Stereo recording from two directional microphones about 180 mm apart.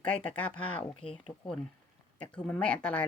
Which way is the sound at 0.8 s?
30° left (ahead or behind).